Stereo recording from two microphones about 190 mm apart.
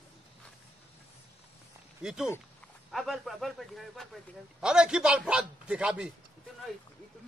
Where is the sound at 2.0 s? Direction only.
5° right (ahead or behind).